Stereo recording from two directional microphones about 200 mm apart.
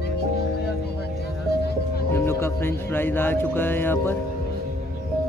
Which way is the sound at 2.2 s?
10° left (ahead or behind).